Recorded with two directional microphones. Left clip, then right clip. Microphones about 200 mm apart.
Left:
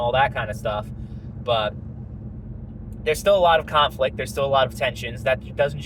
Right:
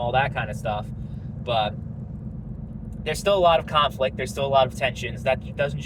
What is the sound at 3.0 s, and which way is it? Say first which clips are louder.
Speech: left 2 dB; 25° left (ahead or behind).